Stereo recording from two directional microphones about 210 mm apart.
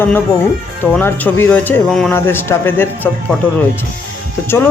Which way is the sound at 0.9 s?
10° left (ahead or behind).